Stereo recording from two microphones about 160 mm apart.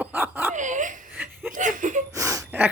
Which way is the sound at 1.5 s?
55° right (ahead or behind).